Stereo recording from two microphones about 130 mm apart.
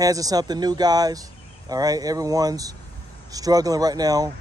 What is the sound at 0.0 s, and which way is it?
Speech, 25° right (ahead or behind).